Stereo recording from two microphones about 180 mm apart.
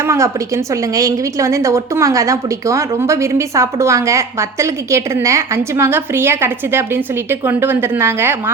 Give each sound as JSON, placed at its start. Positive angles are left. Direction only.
{"t": 0.0, "sound": "a woman's voice", "side_deg": -15}